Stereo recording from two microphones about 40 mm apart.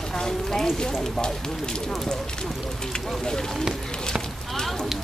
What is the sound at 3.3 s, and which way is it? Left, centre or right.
Speech, centre.